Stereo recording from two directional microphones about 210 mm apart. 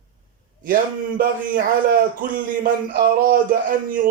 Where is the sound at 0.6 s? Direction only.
40° right (ahead or behind).